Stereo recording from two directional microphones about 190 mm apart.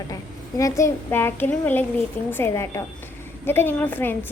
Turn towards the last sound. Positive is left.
turn(degrees=10)  # may be behind; listen again after turning